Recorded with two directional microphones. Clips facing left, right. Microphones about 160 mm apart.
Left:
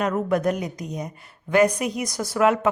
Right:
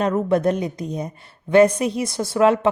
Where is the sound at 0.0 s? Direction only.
30° right (ahead or behind).